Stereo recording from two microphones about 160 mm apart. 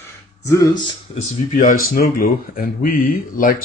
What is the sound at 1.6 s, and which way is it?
Speech, 60° left (ahead or behind).